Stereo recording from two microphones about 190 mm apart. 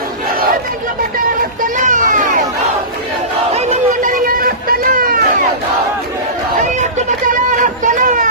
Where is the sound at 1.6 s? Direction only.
40° right (ahead or behind).